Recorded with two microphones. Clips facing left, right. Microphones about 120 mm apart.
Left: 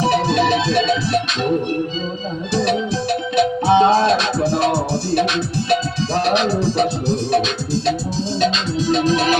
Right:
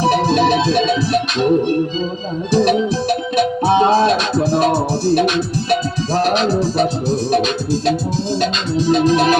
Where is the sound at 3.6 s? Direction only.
10° right (ahead or behind).